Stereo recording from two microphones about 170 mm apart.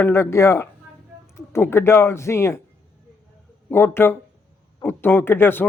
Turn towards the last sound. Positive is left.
turn(degrees=10)  # may be behind; listen again after turning